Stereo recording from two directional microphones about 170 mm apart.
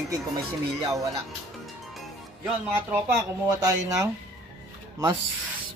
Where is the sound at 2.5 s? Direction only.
5° right (ahead or behind).